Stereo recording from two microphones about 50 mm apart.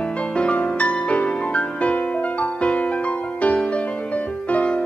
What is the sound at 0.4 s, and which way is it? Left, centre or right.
Music, left.